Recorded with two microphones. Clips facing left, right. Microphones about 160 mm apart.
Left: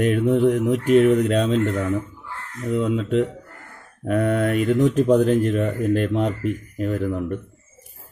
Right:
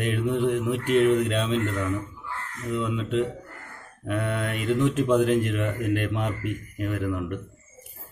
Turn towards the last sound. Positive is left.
turn(degrees=35)  # may be behind; listen again after turning